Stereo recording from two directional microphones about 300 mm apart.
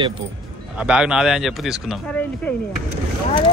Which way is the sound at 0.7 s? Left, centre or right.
Centre.